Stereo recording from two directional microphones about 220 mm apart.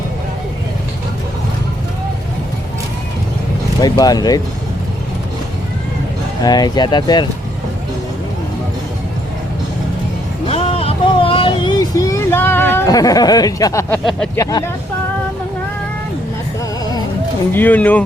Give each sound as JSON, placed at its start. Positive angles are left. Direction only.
{"t": 3.8, "sound": "speech", "side_deg": 20}
{"t": 6.4, "sound": "speech", "side_deg": 20}
{"t": 10.4, "sound": "a sound", "side_deg": 25}
{"t": 14.0, "sound": "speech", "side_deg": 0}
{"t": 14.3, "sound": "speech", "side_deg": 15}
{"t": 17.5, "sound": "speech", "side_deg": 10}